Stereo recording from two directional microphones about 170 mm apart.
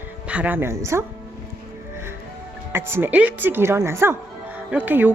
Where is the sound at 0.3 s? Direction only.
10° right (ahead or behind).